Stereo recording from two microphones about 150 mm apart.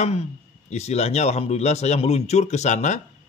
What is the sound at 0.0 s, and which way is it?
Speech, 50° left (ahead or behind).